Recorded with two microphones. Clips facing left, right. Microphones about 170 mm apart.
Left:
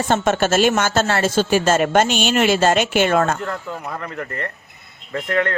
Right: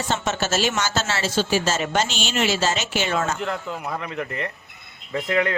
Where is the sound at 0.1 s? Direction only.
55° left (ahead or behind).